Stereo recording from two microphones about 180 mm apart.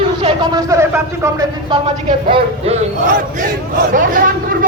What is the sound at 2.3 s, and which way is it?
Speech, 30° right (ahead or behind).